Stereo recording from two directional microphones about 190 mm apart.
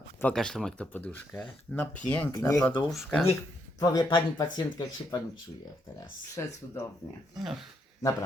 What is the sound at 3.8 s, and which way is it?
Speech, 20° left (ahead or behind).